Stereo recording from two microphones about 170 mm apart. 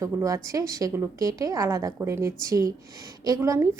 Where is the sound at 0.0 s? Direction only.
20° right (ahead or behind).